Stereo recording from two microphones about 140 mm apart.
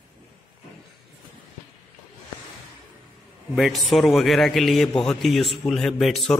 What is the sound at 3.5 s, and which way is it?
A man's voice, centre (ahead or behind).